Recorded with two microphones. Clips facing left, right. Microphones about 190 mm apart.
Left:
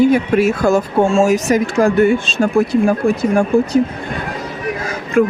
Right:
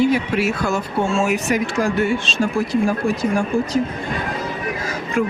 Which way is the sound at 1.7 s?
55° left (ahead or behind).